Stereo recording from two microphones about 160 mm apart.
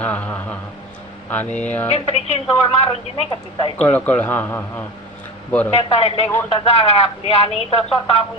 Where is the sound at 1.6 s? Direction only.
10° left (ahead or behind).